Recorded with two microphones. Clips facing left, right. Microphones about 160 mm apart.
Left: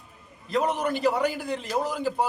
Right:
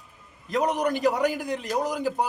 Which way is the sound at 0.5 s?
15° right (ahead or behind).